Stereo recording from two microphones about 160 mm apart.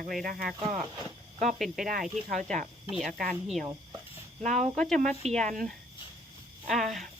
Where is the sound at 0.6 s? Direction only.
35° right (ahead or behind).